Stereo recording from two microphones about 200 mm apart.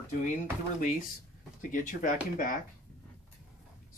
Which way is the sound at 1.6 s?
40° left (ahead or behind).